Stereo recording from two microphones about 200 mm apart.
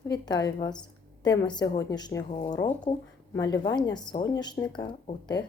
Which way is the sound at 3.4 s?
20° left (ahead or behind).